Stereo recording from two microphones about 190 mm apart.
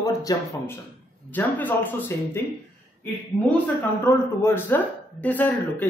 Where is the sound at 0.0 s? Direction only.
15° left (ahead or behind).